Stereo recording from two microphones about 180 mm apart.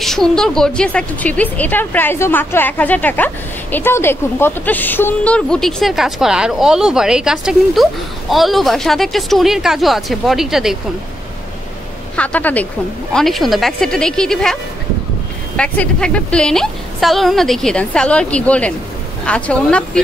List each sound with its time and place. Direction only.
0.0 s a woman's voice: centre (ahead or behind)
12.2 s a woman's voice: 10° left (ahead or behind)